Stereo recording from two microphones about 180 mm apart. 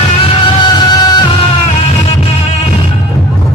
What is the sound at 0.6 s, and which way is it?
Music, 25° left (ahead or behind).